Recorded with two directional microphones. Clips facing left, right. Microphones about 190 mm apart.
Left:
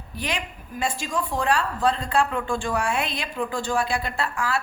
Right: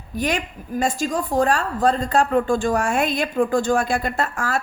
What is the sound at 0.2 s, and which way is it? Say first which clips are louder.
A woman's voice: right 7 dB; 45° right (ahead or behind).